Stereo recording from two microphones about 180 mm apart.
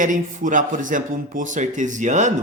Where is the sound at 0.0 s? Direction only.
45° right (ahead or behind).